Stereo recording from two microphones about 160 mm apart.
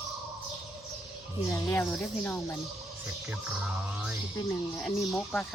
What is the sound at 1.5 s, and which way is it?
Speech, 10° left (ahead or behind).